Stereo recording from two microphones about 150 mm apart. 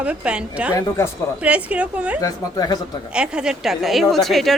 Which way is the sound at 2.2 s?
25° left (ahead or behind).